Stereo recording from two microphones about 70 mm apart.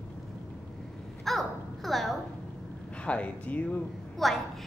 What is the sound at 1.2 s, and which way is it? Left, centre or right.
Babbling, centre.